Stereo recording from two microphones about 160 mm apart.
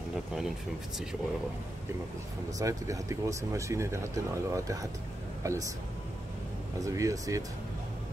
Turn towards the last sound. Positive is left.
turn(degrees=-20)  # may be behind; listen again after turning